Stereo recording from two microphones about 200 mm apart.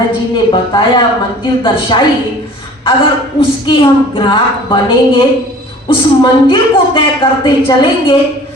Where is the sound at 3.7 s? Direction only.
25° left (ahead or behind).